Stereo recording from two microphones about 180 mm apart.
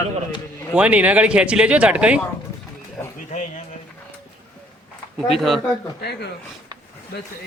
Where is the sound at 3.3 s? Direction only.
40° left (ahead or behind).